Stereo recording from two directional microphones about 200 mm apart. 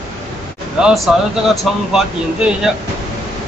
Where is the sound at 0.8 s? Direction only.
Centre (ahead or behind).